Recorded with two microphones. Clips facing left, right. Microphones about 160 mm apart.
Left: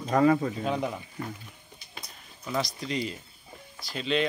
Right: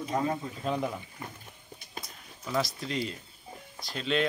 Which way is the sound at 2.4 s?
Centre (ahead or behind).